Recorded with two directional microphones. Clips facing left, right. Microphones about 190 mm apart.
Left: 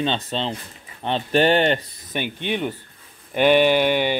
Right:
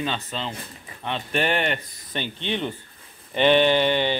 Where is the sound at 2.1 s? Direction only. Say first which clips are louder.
Left 3 dB; 15° left (ahead or behind).